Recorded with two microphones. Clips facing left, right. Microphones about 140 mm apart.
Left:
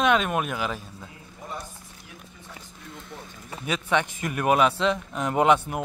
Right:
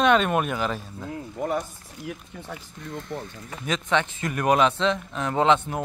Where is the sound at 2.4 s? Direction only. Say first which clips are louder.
Right 7 dB; 90° right.